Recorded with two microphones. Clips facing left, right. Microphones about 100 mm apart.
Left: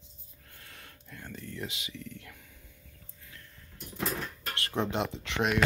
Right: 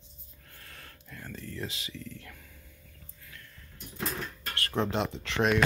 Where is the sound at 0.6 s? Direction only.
20° left (ahead or behind).